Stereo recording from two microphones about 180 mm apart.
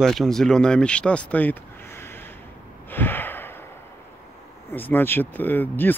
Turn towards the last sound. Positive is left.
turn(degrees=10)  # may be behind; listen again after turning